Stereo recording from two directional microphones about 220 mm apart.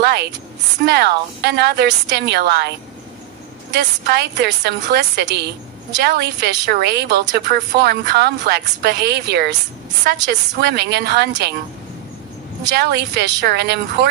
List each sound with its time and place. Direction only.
0.0 s a woman's voice: 50° right (ahead or behind)
3.7 s a woman's voice: 50° right (ahead or behind)
12.6 s a woman's voice: 50° right (ahead or behind)